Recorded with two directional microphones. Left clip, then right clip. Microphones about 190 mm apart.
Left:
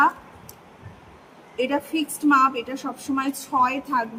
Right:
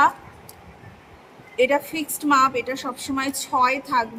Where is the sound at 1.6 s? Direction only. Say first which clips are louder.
Right 3 dB; 10° right (ahead or behind).